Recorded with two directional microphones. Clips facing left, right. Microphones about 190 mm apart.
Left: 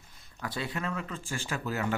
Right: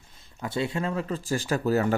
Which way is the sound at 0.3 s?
25° right (ahead or behind).